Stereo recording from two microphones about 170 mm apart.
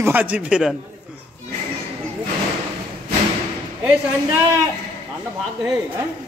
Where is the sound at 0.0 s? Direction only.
10° right (ahead or behind).